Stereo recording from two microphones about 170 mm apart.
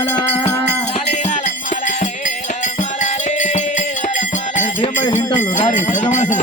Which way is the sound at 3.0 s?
45° left (ahead or behind).